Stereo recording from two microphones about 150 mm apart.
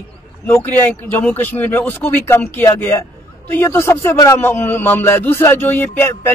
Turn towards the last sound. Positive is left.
turn(degrees=15)  # may be behind; listen again after turning